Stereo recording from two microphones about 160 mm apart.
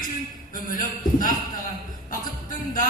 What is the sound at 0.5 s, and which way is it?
Speech, 55° left (ahead or behind).